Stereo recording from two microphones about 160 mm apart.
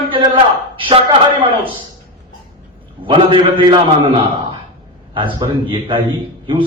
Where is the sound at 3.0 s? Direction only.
30° right (ahead or behind).